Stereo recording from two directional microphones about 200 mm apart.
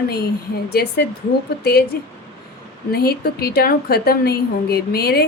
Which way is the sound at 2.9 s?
50° left (ahead or behind).